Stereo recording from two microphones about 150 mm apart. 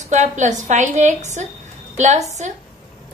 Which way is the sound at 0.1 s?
55° right (ahead or behind).